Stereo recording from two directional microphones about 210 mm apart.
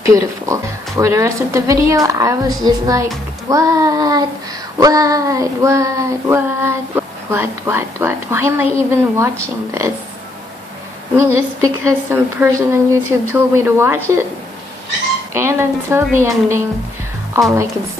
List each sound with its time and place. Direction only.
0.0 s child singing: 15° right (ahead or behind)
11.1 s child singing: 15° right (ahead or behind)
15.3 s child singing: 10° right (ahead or behind)